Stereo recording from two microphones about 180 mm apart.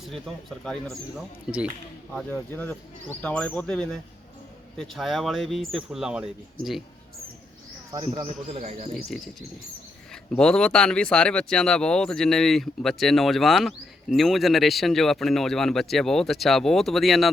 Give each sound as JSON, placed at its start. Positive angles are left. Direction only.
{"t": 0.0, "sound": "speech", "side_deg": 0}
{"t": 2.1, "sound": "speech", "side_deg": 5}
{"t": 8.1, "sound": "speech", "side_deg": -30}
{"t": 9.0, "sound": "speech", "side_deg": 0}
{"t": 10.3, "sound": "speech", "side_deg": 5}